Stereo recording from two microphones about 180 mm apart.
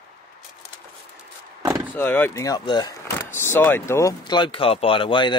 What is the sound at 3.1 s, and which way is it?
Speech, 15° left (ahead or behind).